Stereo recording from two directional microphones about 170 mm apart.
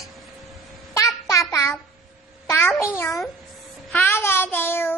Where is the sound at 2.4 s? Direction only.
15° left (ahead or behind).